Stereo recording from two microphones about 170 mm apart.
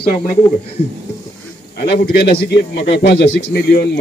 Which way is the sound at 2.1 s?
70° left (ahead or behind).